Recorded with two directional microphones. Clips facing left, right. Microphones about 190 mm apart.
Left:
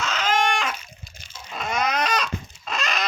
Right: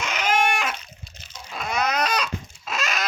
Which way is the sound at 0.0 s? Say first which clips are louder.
Even; 10° right (ahead or behind).